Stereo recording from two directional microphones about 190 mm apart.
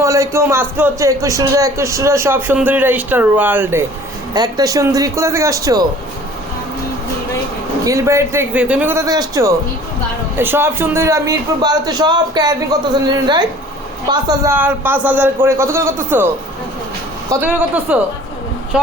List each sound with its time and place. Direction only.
0.0 s a man's voice: 15° right (ahead or behind)
7.9 s a man's voice: 15° right (ahead or behind)
17.4 s a man's voice: 10° right (ahead or behind)